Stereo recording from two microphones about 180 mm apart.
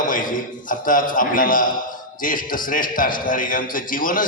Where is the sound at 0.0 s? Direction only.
45° left (ahead or behind).